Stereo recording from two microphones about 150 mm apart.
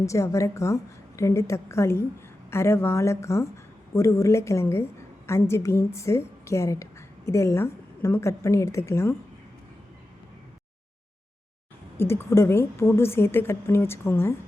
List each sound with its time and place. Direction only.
0.0 s a woman's voice: 20° left (ahead or behind)
11.9 s speech: 15° left (ahead or behind)